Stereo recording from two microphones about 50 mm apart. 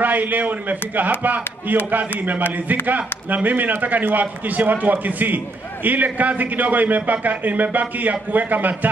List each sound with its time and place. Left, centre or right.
0.0 s a man's voice: right